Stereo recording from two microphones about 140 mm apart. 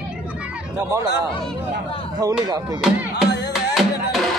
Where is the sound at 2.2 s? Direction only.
25° right (ahead or behind).